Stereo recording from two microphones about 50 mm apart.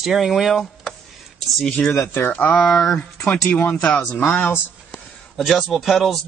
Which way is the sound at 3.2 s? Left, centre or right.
Left.